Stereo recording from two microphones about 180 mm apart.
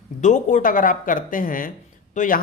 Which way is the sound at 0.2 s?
45° left (ahead or behind).